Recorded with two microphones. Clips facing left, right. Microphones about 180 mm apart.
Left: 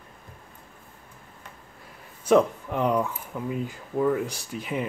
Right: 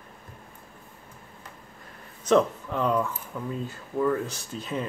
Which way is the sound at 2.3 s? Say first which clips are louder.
Left 2 dB; 10° left (ahead or behind).